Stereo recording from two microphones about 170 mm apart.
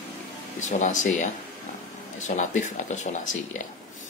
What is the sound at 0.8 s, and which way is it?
Speech, 45° left (ahead or behind).